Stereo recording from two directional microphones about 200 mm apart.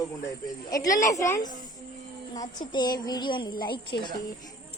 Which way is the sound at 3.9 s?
60° left (ahead or behind).